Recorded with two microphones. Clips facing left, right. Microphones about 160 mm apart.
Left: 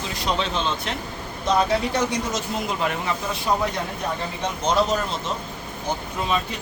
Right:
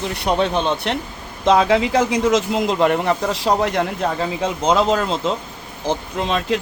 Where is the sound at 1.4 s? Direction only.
90° right.